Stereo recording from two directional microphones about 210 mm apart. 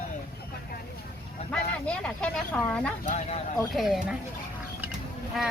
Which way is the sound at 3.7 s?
Centre (ahead or behind).